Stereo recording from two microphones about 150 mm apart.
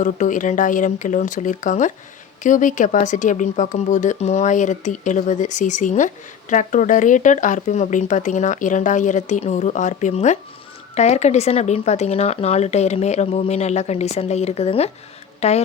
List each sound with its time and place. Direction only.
0.0 s speech: 60° left (ahead or behind)